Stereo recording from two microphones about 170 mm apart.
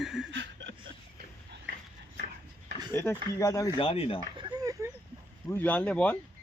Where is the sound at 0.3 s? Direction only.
90° right.